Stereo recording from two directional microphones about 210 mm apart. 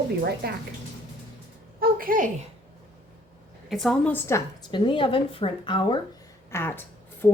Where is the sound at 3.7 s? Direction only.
Centre (ahead or behind).